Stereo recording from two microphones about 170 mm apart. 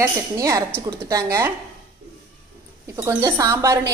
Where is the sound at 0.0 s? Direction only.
20° right (ahead or behind).